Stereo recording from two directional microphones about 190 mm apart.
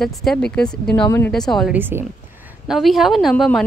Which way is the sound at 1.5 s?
Centre (ahead or behind).